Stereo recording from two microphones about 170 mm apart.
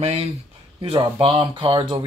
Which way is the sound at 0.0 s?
40° right (ahead or behind).